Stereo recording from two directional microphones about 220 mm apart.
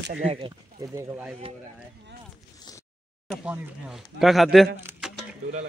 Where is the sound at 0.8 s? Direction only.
15° right (ahead or behind).